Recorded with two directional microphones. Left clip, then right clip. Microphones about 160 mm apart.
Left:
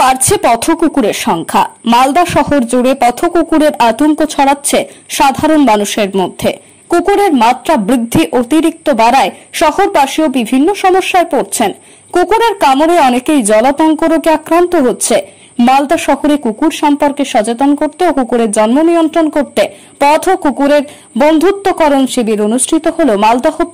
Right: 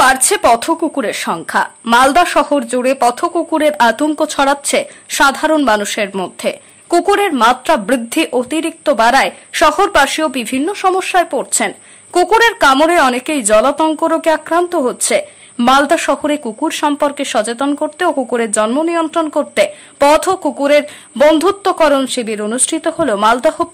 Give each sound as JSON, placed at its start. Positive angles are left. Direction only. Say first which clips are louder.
{"t": 0.0, "sound": "a woman's voice", "louder": "left 1 dB", "side_deg": 10}